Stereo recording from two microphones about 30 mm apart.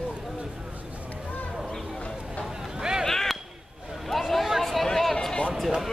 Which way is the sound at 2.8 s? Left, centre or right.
Right.